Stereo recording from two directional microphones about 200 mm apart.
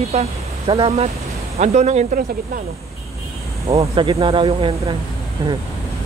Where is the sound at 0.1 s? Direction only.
30° right (ahead or behind).